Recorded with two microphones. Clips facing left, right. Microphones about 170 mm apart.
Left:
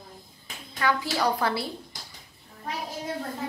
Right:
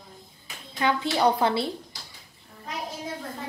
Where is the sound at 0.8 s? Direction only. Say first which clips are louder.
Right 3 dB; 20° right (ahead or behind).